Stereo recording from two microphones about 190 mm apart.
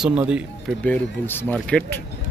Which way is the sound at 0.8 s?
10° left (ahead or behind).